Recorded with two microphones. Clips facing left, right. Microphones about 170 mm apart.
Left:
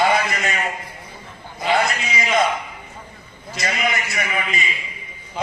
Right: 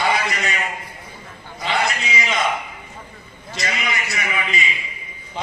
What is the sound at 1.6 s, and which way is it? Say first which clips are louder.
Speech: left 3 dB; 45° left (ahead or behind).